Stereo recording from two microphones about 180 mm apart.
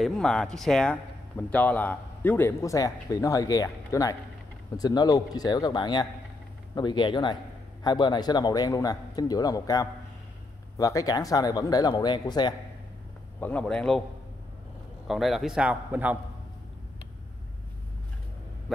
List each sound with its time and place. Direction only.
0.0 s speech: centre (ahead or behind); by 12.5 s 25° left (ahead or behind)
13.4 s a man's voice: 10° left (ahead or behind)
15.0 s a man's voice: centre (ahead or behind)